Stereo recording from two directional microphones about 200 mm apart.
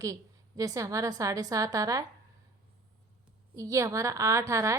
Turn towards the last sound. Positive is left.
turn(degrees=-15)  # may be behind; listen again after turning